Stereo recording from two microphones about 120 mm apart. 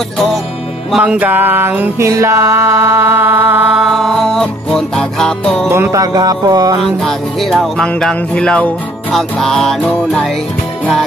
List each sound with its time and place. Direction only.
1.0 s music: 15° right (ahead or behind)
3.6 s music: centre (ahead or behind)
5.7 s music: 25° right (ahead or behind)
6.8 s music: centre (ahead or behind)